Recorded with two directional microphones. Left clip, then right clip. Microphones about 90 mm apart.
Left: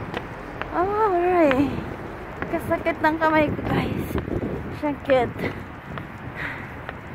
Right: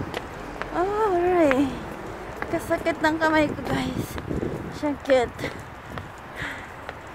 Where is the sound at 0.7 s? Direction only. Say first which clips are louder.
Left 2 dB; 20° right (ahead or behind).